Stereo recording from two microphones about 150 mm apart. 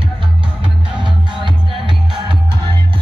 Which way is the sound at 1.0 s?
30° right (ahead or behind).